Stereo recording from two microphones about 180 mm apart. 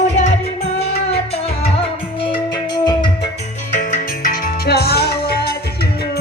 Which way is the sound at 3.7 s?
45° left (ahead or behind).